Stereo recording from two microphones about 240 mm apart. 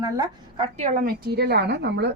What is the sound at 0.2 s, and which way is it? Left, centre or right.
A woman's voice, right.